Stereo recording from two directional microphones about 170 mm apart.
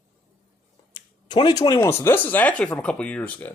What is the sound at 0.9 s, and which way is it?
Speech, 25° left (ahead or behind).